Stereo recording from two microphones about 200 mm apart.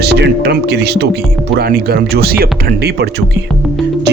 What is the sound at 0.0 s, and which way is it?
A man's voice, 55° right (ahead or behind).